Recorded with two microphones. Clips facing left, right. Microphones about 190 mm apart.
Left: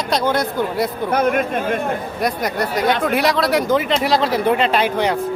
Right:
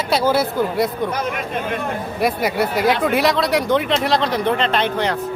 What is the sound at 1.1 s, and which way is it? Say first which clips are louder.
Speech: left 6 dB; 55° left (ahead or behind).